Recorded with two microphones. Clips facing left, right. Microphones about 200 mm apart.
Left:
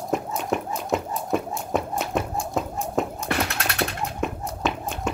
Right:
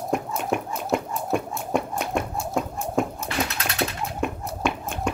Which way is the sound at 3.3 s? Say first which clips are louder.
Left 2 dB; 60° left (ahead or behind).